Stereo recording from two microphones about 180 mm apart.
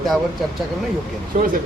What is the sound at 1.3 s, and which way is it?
Speech, 45° right (ahead or behind).